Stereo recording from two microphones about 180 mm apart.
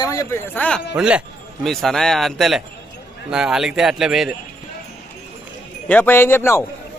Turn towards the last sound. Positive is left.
turn(degrees=15)  # may be behind; listen again after turning